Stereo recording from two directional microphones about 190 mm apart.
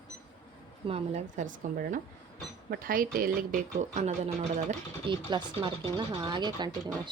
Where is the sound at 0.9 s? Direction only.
35° right (ahead or behind).